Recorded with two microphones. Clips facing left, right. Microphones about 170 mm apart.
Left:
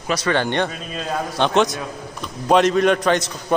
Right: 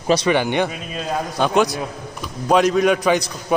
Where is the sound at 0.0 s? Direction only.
25° right (ahead or behind).